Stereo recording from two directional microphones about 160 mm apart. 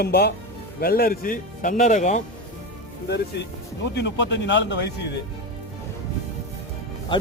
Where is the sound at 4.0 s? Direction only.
90° left.